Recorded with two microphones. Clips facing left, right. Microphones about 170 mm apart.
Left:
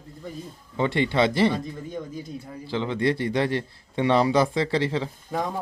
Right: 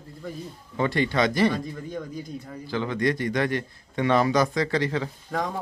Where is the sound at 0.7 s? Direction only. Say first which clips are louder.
Left 1 dB; 20° left (ahead or behind).